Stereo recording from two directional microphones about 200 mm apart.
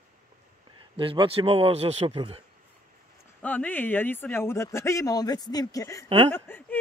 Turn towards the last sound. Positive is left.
turn(degrees=10)  # may be behind; listen again after turning